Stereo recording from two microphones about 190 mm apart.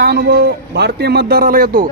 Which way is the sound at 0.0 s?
60° right (ahead or behind).